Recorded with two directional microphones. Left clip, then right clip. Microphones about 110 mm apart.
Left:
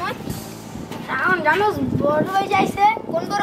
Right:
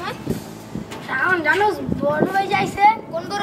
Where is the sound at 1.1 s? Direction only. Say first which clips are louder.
Even; 20° right (ahead or behind).